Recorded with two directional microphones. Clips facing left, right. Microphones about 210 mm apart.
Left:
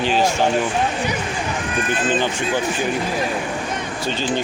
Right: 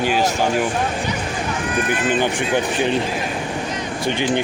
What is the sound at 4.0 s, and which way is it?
Speech, 15° right (ahead or behind).